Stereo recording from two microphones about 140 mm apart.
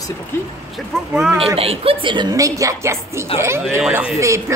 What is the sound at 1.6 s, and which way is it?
Speech, 45° right (ahead or behind).